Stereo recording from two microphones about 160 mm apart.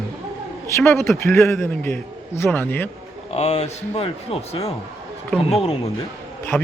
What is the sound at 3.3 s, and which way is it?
A man's voice, 40° left (ahead or behind).